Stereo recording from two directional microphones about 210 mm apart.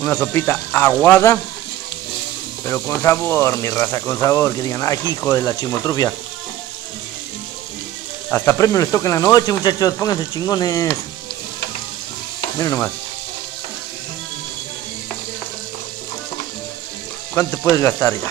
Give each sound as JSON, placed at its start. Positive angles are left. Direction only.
{"t": 0.0, "sound": "speech", "side_deg": 10}
{"t": 2.7, "sound": "speech", "side_deg": 10}
{"t": 8.3, "sound": "speech", "side_deg": 10}
{"t": 12.5, "sound": "speech", "side_deg": 15}
{"t": 17.4, "sound": "speech", "side_deg": 15}